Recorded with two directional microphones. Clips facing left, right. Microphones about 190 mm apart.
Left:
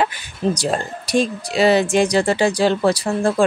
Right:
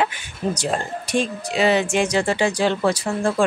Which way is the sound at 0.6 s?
35° left (ahead or behind).